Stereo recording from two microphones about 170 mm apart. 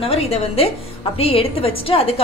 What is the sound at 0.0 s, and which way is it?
A woman's voice, 35° left (ahead or behind).